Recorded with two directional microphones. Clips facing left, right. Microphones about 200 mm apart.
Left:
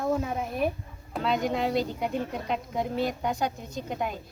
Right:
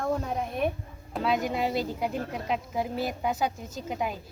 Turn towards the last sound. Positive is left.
turn(degrees=0)  # may be behind; listen again after turning